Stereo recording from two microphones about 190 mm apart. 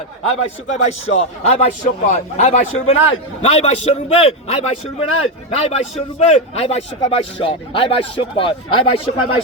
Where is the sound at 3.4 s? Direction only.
35° left (ahead or behind).